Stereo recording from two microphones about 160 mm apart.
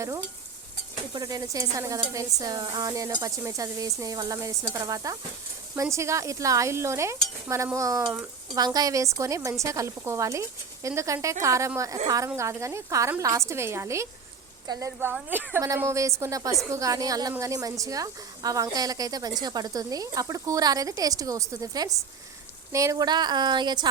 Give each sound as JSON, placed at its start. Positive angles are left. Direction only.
{"t": 1.1, "sound": "a woman's voice", "side_deg": -25}